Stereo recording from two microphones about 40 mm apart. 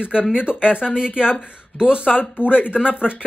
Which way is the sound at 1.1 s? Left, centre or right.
Left.